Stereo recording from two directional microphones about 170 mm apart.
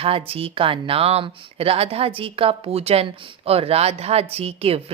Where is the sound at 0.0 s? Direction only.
35° right (ahead or behind).